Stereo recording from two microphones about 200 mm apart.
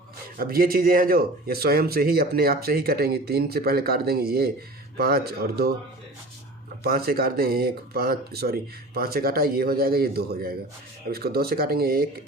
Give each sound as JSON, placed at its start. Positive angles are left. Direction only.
{"t": 0.3, "sound": "speech", "side_deg": -45}
{"t": 6.8, "sound": "speech", "side_deg": -50}